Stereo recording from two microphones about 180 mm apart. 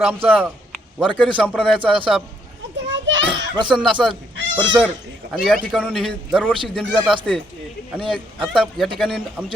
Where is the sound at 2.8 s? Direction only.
90° right.